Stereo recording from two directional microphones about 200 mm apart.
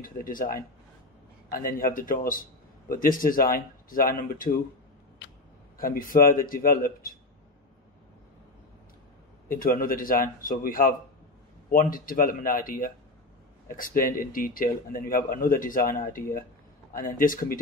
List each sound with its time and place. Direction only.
0.0 s speech: 45° left (ahead or behind)
5.8 s speech: 45° left (ahead or behind)
9.5 s speech: 45° left (ahead or behind)